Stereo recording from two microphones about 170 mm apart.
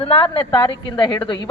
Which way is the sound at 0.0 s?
30° left (ahead or behind).